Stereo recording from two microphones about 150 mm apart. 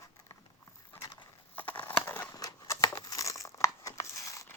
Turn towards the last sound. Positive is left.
turn(degrees=20)  # may be behind; listen again after turning